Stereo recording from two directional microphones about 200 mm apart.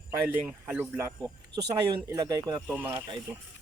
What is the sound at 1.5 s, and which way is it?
Speech, 15° right (ahead or behind).